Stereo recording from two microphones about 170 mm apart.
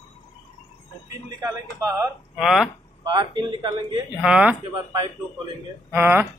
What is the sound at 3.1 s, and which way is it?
Speech, 25° right (ahead or behind).